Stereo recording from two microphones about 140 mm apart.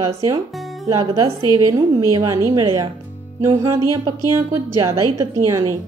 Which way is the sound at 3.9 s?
25° right (ahead or behind).